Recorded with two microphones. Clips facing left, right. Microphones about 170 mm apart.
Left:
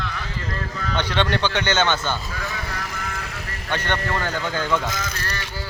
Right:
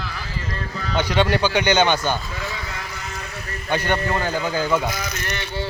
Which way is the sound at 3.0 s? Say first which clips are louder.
Left 1 dB; 60° left (ahead or behind).